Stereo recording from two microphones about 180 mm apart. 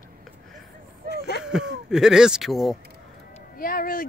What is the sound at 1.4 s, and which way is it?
Speech, 5° right (ahead or behind).